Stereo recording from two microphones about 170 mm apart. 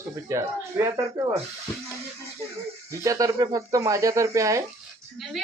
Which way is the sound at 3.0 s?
20° right (ahead or behind).